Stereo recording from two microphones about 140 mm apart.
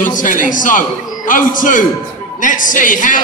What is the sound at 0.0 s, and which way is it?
A man's voice, 70° left (ahead or behind).